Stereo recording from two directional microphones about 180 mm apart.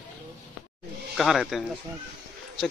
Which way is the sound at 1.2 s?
Centre (ahead or behind).